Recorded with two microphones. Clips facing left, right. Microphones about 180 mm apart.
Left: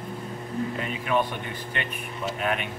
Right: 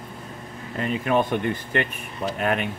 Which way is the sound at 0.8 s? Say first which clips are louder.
Right 7 dB; 45° right (ahead or behind).